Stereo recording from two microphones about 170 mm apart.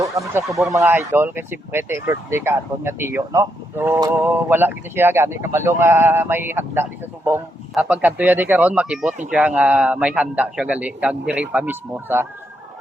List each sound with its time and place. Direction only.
0.0 s speech: 20° right (ahead or behind)